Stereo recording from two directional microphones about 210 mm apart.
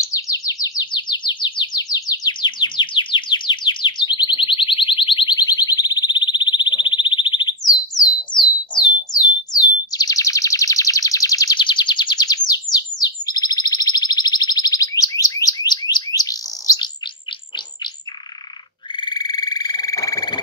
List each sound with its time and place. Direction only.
0.1 s bird: 15° left (ahead or behind)
8.3 s a sound: 20° left (ahead or behind)
18.9 s frog: 20° left (ahead or behind)